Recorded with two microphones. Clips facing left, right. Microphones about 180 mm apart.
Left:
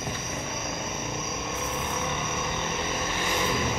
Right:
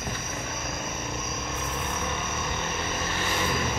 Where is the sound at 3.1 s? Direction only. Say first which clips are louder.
Even; 15° left (ahead or behind).